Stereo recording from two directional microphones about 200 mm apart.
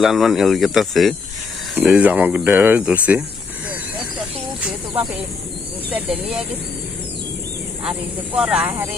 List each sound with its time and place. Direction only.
0.0 s speech: centre (ahead or behind)
4.6 s speech: 10° right (ahead or behind)
8.4 s speech: 5° right (ahead or behind)